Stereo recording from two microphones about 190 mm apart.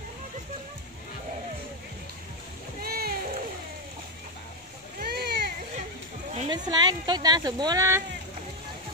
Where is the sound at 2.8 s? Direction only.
50° right (ahead or behind).